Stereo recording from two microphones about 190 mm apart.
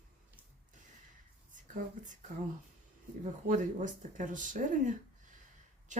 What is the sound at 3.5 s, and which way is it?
Speech, 40° right (ahead or behind).